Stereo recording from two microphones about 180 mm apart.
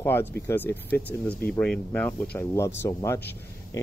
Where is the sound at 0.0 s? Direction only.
10° left (ahead or behind).